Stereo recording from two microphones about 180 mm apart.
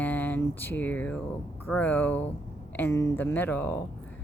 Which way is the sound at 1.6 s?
10° left (ahead or behind).